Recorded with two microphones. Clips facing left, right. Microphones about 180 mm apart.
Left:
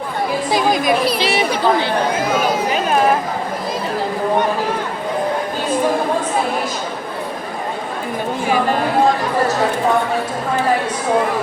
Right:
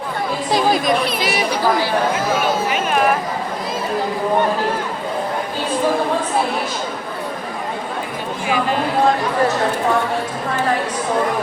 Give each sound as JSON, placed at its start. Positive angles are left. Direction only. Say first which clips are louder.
{"t": 0.5, "sound": "speech", "louder": "even", "side_deg": 0}
{"t": 1.2, "sound": "speech", "louder": "left 2 dB", "side_deg": 25}